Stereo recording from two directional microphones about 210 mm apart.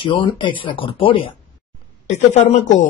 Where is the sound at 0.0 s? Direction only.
25° left (ahead or behind).